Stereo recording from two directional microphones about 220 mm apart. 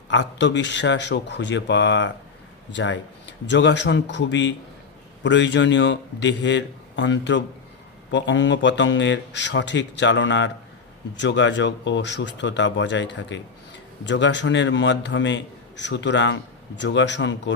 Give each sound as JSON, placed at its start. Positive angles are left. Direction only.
{"t": 0.1, "sound": "a man's voice", "side_deg": 55}